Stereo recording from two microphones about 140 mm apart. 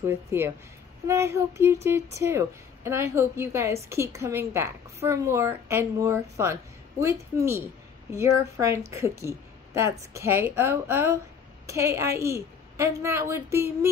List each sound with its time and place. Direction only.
0.0 s a woman's voice: 15° right (ahead or behind)